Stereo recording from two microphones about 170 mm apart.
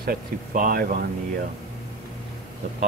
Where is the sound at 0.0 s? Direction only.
55° right (ahead or behind).